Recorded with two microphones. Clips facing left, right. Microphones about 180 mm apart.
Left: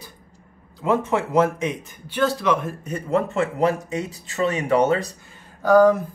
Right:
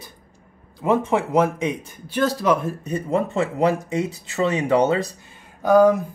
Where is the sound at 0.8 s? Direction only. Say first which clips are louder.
Right 1 dB; 15° right (ahead or behind).